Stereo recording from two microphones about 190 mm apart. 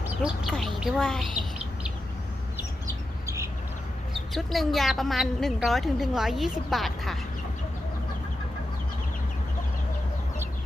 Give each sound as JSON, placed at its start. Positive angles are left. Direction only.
{"t": 0.0, "sound": "a woman's voice", "side_deg": -5}
{"t": 2.6, "sound": "bird", "side_deg": -15}
{"t": 4.3, "sound": "a woman's voice", "side_deg": 0}